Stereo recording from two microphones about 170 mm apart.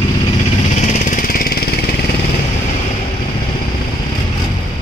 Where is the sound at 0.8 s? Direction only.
45° left (ahead or behind).